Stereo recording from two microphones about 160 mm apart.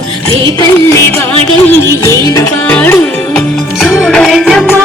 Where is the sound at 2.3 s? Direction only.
15° left (ahead or behind).